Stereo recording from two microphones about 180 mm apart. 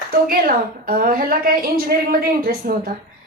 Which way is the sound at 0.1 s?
55° right (ahead or behind).